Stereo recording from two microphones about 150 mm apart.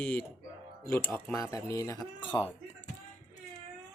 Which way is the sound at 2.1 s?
30° left (ahead or behind).